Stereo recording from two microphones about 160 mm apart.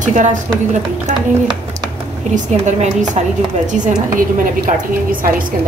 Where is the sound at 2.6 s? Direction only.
45° right (ahead or behind).